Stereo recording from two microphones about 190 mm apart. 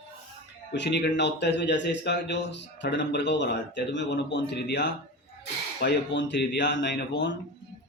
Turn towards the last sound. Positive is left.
turn(degrees=70)  # may be behind; listen again after turning